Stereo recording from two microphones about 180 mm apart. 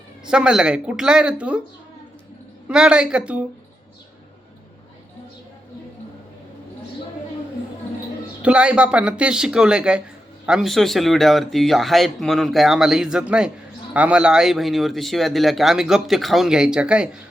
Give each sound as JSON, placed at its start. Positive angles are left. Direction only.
{"t": 0.3, "sound": "speech", "side_deg": -5}
{"t": 2.6, "sound": "speech", "side_deg": -5}
{"t": 8.4, "sound": "speech", "side_deg": -5}